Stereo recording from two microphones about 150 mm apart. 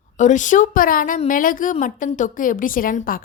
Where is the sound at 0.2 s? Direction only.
55° left (ahead or behind).